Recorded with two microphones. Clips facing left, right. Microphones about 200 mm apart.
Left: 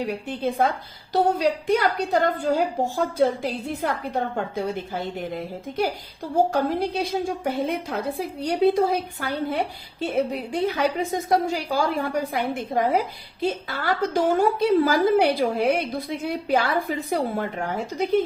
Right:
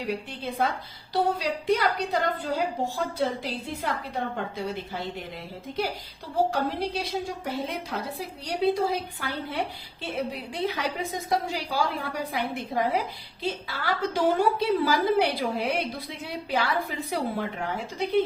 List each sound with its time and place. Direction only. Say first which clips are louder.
0.1 s a woman's voice: left 5 dB; 45° left (ahead or behind)